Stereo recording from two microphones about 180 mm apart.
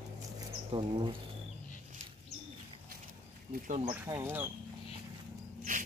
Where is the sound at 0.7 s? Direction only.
30° right (ahead or behind).